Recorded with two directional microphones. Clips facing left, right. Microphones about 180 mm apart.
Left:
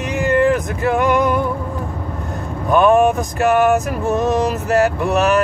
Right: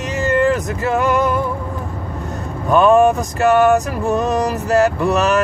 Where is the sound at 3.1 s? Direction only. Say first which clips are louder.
Right 1 dB; centre (ahead or behind).